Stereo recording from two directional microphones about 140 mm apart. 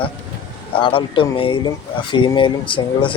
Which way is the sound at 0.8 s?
35° left (ahead or behind).